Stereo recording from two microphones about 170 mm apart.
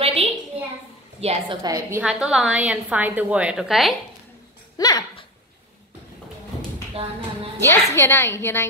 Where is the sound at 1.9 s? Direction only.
5° right (ahead or behind).